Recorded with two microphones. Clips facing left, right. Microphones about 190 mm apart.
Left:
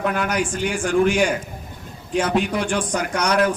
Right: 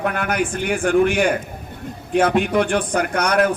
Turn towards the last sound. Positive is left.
turn(degrees=-55)  # may be behind; listen again after turning